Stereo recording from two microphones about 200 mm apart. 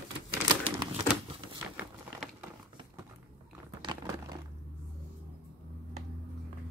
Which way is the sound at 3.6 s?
20° right (ahead or behind).